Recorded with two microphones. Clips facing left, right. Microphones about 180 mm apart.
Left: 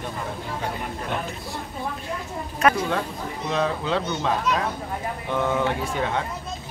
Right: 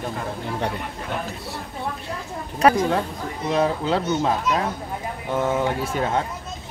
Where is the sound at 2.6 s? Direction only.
35° right (ahead or behind).